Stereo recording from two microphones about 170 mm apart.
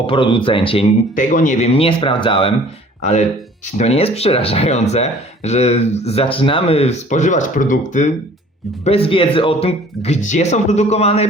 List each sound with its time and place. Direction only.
0.1 s speech: 30° left (ahead or behind)
1.1 s speech: 50° left (ahead or behind); by 2.5 s 30° left (ahead or behind)
3.0 s speech: 45° left (ahead or behind)
8.8 s speech: 35° left (ahead or behind)